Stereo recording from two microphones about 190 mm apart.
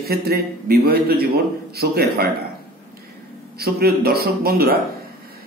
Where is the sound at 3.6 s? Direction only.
55° right (ahead or behind).